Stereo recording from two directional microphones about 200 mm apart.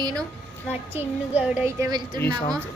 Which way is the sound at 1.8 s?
20° right (ahead or behind).